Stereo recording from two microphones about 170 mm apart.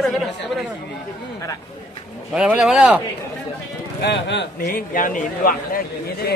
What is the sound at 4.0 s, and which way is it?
A man's voice, 90° left.